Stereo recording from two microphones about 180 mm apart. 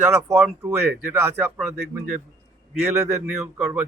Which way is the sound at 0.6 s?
15° right (ahead or behind).